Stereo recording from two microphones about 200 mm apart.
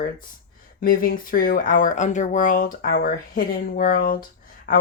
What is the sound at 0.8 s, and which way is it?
Speech, 45° left (ahead or behind).